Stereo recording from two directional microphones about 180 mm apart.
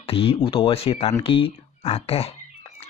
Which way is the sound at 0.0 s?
30° left (ahead or behind).